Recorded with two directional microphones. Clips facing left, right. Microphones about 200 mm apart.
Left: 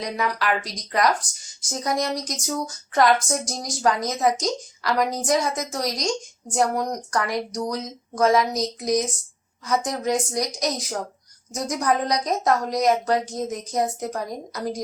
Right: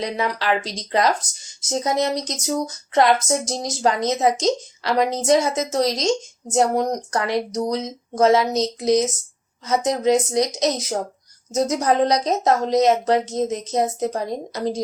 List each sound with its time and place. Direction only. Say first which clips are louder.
0.0 s speech: right 2 dB; 25° right (ahead or behind)